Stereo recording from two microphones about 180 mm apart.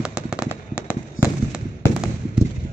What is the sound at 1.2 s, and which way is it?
Fireworks, 90° left.